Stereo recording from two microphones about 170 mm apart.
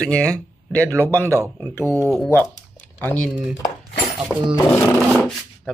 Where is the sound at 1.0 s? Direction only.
15° right (ahead or behind).